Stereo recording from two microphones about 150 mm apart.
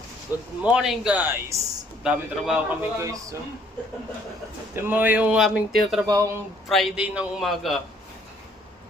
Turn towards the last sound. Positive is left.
turn(degrees=0)  # may be behind; listen again after turning